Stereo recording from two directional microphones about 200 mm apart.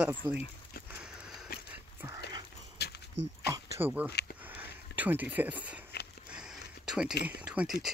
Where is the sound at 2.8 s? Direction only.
55° left (ahead or behind).